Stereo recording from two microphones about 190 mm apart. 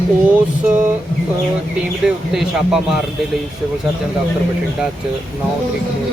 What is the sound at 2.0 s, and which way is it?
Speech, 5° right (ahead or behind).